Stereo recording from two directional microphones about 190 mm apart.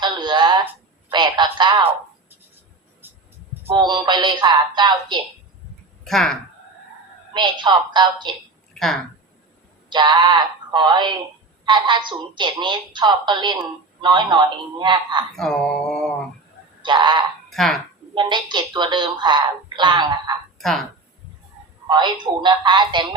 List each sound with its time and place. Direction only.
0.0 s a sound: 25° right (ahead or behind)
3.0 s music: 10° right (ahead or behind)
3.7 s speech: 25° right (ahead or behind)
6.1 s mantra: centre (ahead or behind)
7.3 s speech: 25° right (ahead or behind)
8.7 s a sound: centre (ahead or behind)
9.9 s speech: 25° right (ahead or behind)
15.4 s mantra: 5° left (ahead or behind)
16.8 s speech: 25° right (ahead or behind)
17.5 s speech: centre (ahead or behind)
18.1 s speech: 25° right (ahead or behind)
20.6 s speech: centre (ahead or behind)
21.8 s speech: 25° right (ahead or behind)